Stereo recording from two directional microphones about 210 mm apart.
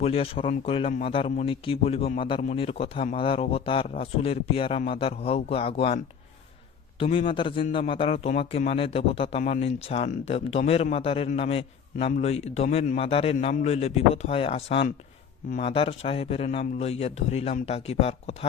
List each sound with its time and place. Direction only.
0.0 s a man's voice: 25° left (ahead or behind)
7.0 s a man's voice: 25° left (ahead or behind)